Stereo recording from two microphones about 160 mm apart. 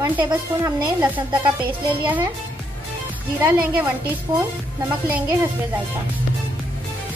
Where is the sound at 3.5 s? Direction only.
10° right (ahead or behind).